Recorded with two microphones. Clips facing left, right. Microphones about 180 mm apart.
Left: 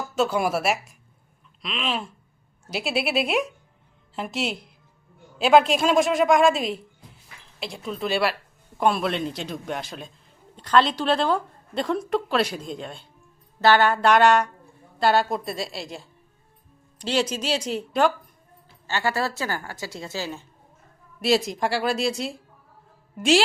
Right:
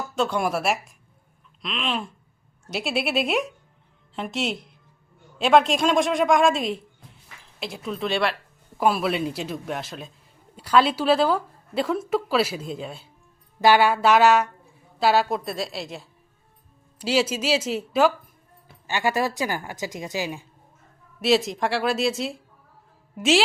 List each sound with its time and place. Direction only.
0.2 s a woman's voice: 5° left (ahead or behind)
18.9 s a woman's voice: 15° right (ahead or behind)
21.2 s a woman's voice: centre (ahead or behind)